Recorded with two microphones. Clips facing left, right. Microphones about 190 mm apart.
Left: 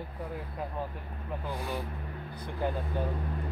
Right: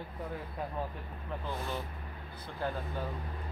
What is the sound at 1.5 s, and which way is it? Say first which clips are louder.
Speech: left 2 dB; 15° left (ahead or behind).